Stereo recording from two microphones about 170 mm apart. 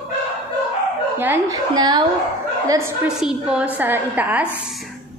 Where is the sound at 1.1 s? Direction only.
15° right (ahead or behind).